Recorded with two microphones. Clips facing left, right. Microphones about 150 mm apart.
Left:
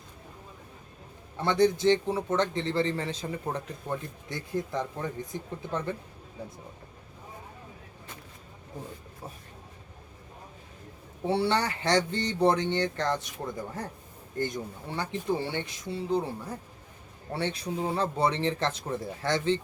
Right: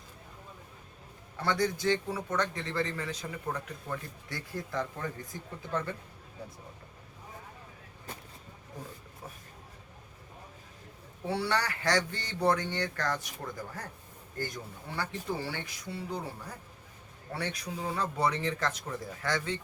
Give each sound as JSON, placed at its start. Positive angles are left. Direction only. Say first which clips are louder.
{"t": 1.4, "sound": "a man's voice", "louder": "left 6 dB", "side_deg": 25}
{"t": 11.3, "sound": "a man's voice", "louder": "left 5 dB", "side_deg": 25}
{"t": 17.3, "sound": "a man's voice", "louder": "left 5 dB", "side_deg": 25}